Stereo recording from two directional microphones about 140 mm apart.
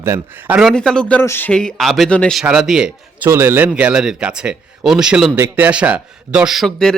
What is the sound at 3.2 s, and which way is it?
A man's voice, 15° right (ahead or behind).